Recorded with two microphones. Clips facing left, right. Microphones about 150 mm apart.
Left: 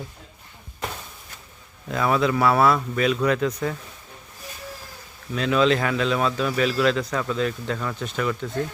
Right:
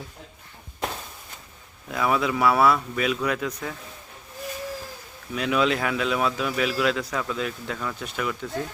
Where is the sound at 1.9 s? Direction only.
5° right (ahead or behind).